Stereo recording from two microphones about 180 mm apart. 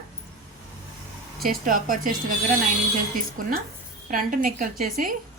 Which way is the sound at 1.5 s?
50° right (ahead or behind).